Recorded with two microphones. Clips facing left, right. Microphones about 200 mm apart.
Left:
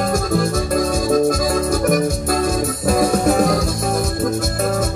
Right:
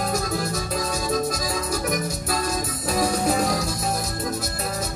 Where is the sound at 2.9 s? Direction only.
55° left (ahead or behind).